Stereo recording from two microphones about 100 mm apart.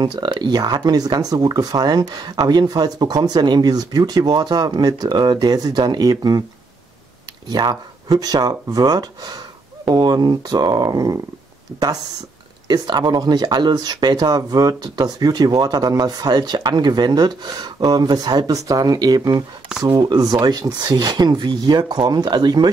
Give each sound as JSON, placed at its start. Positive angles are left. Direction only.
{"t": 0.0, "sound": "speech", "side_deg": -45}
{"t": 7.4, "sound": "speech", "side_deg": -45}
{"t": 12.6, "sound": "speech", "side_deg": -45}